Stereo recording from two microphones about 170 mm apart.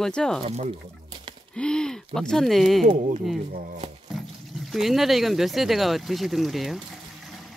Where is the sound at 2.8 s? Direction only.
50° right (ahead or behind).